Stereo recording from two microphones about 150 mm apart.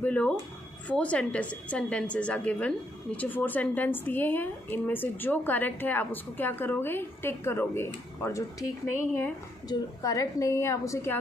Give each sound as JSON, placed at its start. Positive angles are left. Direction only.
{"t": 0.0, "sound": "a woman's voice", "side_deg": 10}
{"t": 9.7, "sound": "a woman's voice", "side_deg": 20}